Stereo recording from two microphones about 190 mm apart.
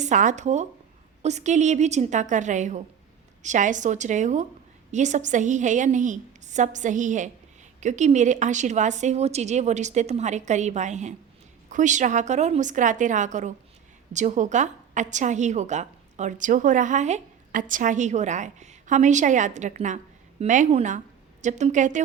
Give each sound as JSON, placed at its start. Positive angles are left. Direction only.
{"t": 0.0, "sound": "a woman's voice", "side_deg": -40}